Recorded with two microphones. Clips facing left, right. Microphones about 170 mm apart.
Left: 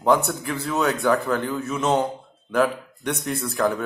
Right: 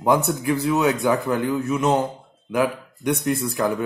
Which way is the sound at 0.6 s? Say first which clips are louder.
Right 1 dB; 15° right (ahead or behind).